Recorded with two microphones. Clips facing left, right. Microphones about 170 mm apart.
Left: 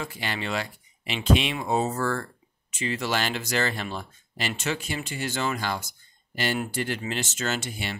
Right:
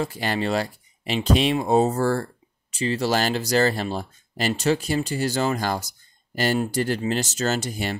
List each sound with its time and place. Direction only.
0.0 s speech: 40° right (ahead or behind)